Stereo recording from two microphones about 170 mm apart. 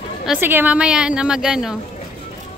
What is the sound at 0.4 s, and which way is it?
A woman's voice, 10° right (ahead or behind).